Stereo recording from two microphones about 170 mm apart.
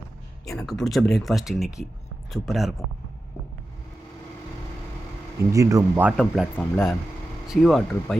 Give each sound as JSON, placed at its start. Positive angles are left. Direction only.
{"t": 0.4, "sound": "speech", "side_deg": 0}
{"t": 5.5, "sound": "speech", "side_deg": -20}
{"t": 6.1, "sound": "speech", "side_deg": -5}